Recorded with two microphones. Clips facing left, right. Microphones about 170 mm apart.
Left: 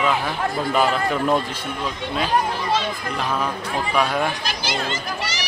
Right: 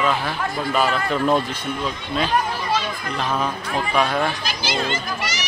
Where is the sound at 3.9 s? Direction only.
10° left (ahead or behind).